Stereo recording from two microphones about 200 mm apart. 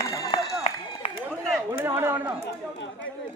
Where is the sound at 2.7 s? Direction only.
65° left (ahead or behind).